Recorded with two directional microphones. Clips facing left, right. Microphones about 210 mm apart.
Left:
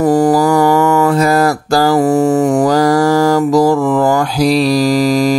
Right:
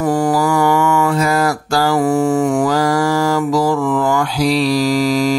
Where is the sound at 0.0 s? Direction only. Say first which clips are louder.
Left 5 dB; 35° left (ahead or behind).